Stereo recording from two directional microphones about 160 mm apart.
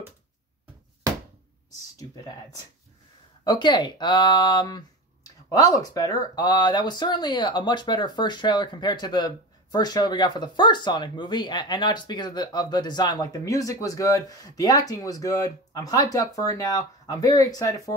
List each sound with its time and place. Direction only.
1.7 s speech: 20° left (ahead or behind)